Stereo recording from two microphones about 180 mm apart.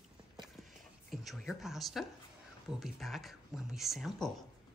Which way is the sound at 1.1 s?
Centre (ahead or behind).